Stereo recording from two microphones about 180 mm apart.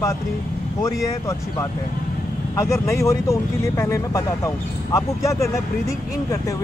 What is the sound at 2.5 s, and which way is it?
Speech, 15° left (ahead or behind).